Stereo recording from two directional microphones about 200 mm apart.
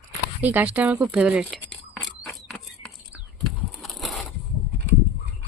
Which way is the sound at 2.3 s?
Centre (ahead or behind).